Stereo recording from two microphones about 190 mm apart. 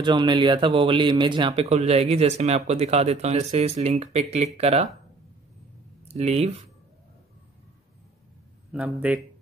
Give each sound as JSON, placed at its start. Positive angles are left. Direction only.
{"t": 0.0, "sound": "speech", "side_deg": -25}
{"t": 6.0, "sound": "speech", "side_deg": -30}
{"t": 8.7, "sound": "speech", "side_deg": -5}